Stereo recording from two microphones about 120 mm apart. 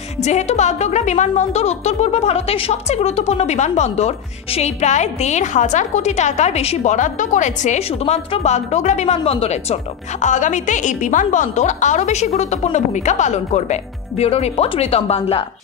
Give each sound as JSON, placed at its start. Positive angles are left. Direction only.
{"t": 0.2, "sound": "speech", "side_deg": 70}
{"t": 10.2, "sound": "speech", "side_deg": 90}